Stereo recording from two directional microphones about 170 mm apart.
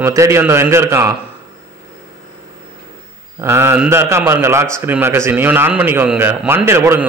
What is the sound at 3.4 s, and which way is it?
Speech, 15° right (ahead or behind).